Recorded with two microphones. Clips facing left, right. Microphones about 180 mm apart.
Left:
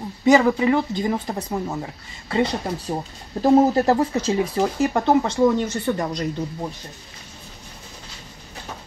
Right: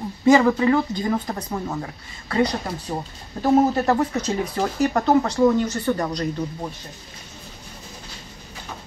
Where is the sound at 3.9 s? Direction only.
30° left (ahead or behind).